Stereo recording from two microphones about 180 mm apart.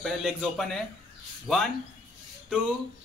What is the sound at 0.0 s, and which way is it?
A man's voice, centre (ahead or behind).